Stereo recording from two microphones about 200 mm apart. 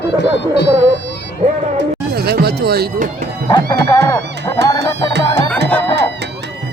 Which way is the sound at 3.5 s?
20° left (ahead or behind).